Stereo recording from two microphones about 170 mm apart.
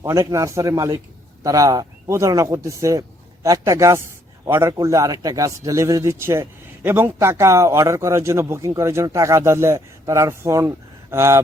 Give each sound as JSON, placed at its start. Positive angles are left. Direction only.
{"t": 0.0, "sound": "a man's voice", "side_deg": -15}